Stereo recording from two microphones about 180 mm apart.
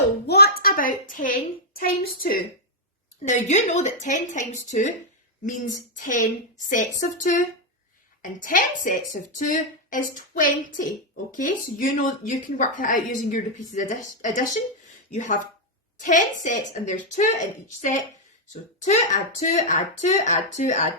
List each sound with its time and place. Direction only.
0.3 s a woman's voice: 65° left (ahead or behind)
3.2 s a woman's voice: 40° left (ahead or behind)